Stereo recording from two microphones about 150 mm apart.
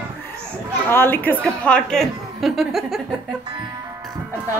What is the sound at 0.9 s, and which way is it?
A woman's voice, 15° left (ahead or behind).